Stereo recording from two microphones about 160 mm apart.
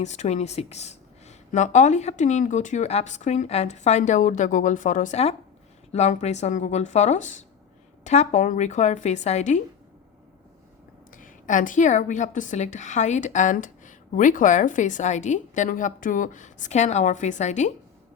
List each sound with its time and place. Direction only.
0.0 s a woman's voice: 45° left (ahead or behind)
11.2 s a woman's voice: 55° left (ahead or behind)